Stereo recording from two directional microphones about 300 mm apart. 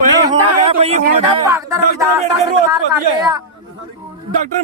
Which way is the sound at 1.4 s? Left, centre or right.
Centre.